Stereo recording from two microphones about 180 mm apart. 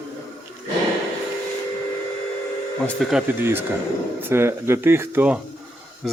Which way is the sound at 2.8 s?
Centre (ahead or behind).